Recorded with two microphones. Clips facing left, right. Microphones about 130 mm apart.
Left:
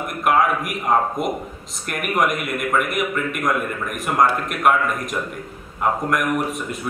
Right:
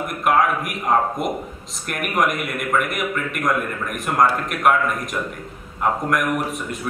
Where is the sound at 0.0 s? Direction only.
Centre (ahead or behind).